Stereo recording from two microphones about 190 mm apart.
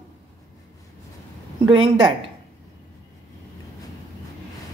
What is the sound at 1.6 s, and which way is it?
Speech, 30° right (ahead or behind).